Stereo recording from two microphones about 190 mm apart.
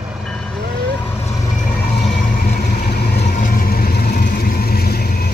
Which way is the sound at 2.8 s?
55° left (ahead or behind).